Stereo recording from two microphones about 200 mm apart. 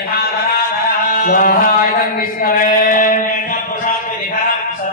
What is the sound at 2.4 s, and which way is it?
Mantra, 45° left (ahead or behind).